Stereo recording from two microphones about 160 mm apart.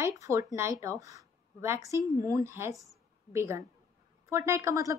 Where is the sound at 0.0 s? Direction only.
20° right (ahead or behind).